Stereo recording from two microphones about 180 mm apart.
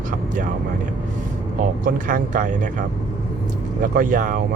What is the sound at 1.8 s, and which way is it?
Speech, 50° right (ahead or behind).